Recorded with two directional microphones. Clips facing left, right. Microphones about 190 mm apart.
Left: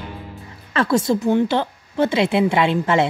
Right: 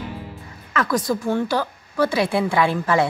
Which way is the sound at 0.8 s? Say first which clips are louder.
Left 4 dB; 25° left (ahead or behind).